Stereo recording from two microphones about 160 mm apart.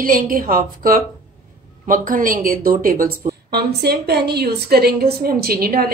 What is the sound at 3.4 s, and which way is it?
A woman's voice, 80° right.